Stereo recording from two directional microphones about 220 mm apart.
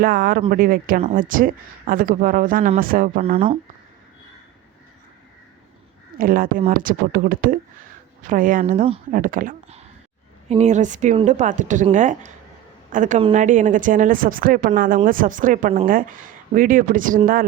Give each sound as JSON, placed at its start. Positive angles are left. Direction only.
{"t": 0.0, "sound": "speech", "side_deg": -40}
{"t": 3.2, "sound": "speech", "side_deg": -25}
{"t": 6.1, "sound": "speech", "side_deg": -40}